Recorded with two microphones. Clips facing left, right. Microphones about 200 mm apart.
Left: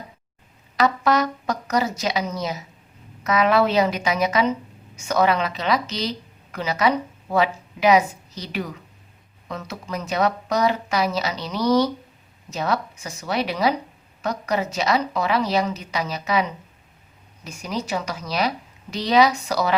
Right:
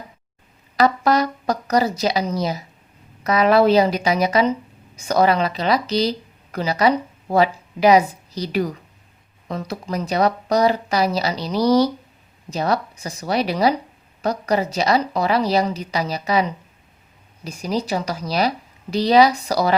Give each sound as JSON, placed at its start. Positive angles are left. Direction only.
{"t": 0.8, "sound": "a woman's voice", "side_deg": -35}